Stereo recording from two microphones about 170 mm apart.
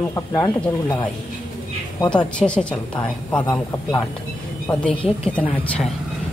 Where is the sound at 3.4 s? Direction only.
25° left (ahead or behind).